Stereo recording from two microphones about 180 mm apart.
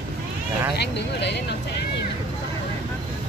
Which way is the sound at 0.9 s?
70° left (ahead or behind).